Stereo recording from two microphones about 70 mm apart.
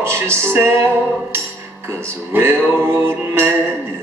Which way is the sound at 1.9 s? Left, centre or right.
Right.